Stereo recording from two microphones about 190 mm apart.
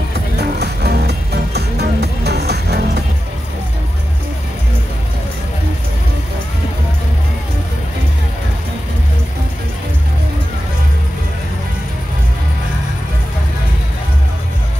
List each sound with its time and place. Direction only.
0.4 s music: 60° right (ahead or behind)